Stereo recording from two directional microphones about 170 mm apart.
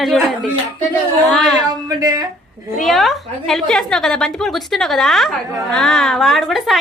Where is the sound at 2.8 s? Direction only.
Centre (ahead or behind).